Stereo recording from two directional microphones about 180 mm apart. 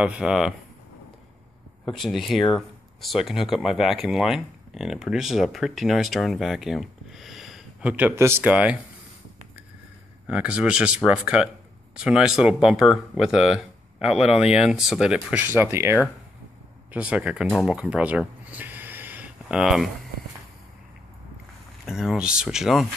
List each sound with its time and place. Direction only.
0.0 s speech: 5° right (ahead or behind)
1.9 s speech: centre (ahead or behind)
10.2 s speech: 5° right (ahead or behind)
14.0 s speech: 35° left (ahead or behind)
14.5 s speech: 5° right (ahead or behind)
21.8 s speech: centre (ahead or behind)